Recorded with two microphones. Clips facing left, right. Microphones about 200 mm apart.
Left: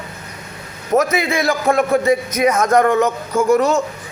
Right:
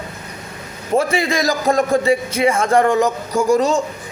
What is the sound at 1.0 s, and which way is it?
A man's voice, 35° right (ahead or behind).